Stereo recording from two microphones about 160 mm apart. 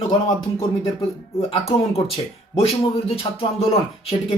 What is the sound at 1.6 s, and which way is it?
Speech, 35° left (ahead or behind).